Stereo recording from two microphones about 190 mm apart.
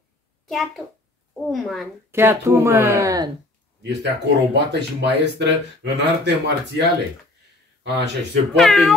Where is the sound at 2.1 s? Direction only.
15° right (ahead or behind).